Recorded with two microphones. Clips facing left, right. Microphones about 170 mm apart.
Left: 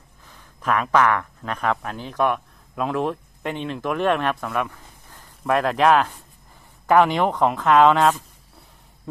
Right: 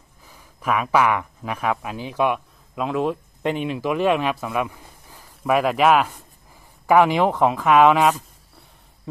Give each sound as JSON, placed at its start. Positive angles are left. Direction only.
{"t": 0.2, "sound": "speech", "side_deg": -10}
{"t": 3.4, "sound": "speech", "side_deg": -15}